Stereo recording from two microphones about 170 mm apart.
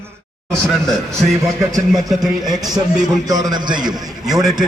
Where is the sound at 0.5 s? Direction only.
Centre (ahead or behind).